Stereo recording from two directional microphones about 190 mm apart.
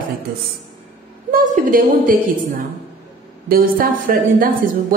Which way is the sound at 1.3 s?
45° right (ahead or behind).